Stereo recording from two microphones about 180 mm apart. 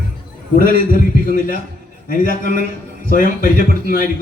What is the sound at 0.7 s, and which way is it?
A man's voice, 50° left (ahead or behind).